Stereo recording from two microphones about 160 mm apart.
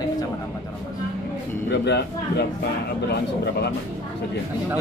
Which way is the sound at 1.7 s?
90° left.